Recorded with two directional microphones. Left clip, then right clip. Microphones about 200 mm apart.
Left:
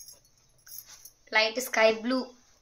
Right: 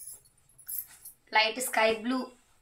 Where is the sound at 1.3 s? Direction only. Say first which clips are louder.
Even; 55° left (ahead or behind).